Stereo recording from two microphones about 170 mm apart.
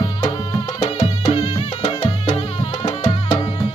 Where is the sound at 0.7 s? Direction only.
30° left (ahead or behind).